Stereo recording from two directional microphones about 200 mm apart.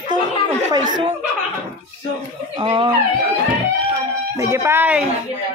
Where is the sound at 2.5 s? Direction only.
20° right (ahead or behind).